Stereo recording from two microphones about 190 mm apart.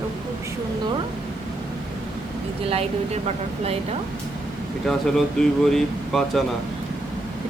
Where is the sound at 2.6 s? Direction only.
30° right (ahead or behind).